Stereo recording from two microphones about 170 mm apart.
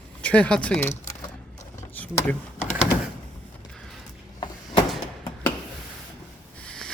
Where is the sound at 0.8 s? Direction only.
15° left (ahead or behind).